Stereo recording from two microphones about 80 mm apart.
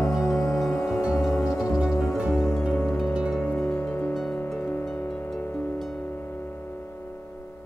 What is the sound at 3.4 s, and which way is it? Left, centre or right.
Music, left.